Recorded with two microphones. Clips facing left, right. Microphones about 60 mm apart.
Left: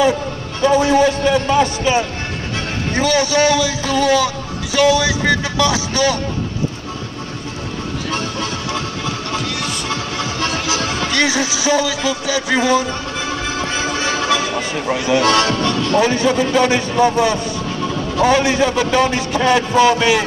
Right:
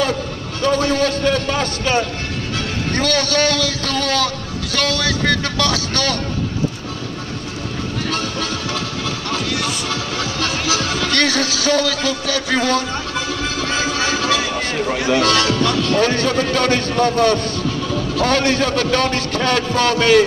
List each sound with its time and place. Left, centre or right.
0.6 s a man's voice: centre
8.1 s music: left
9.8 s music: left
11.1 s a man's voice: centre
15.1 s speech: left
16.0 s a man's voice: centre